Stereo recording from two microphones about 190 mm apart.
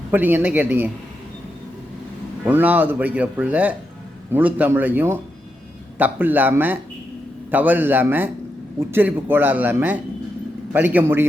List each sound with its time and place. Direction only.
0.1 s speech: 10° right (ahead or behind)
2.4 s speech: 10° right (ahead or behind)